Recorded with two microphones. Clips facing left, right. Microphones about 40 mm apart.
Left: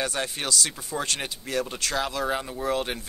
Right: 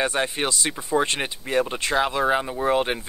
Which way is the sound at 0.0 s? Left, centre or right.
Right.